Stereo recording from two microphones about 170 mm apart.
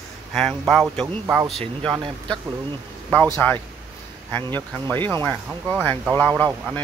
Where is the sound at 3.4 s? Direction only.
10° left (ahead or behind).